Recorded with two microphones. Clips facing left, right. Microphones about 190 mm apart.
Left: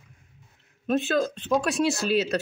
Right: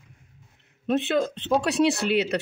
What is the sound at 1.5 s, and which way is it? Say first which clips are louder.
Speech: right 2 dB; 65° right (ahead or behind).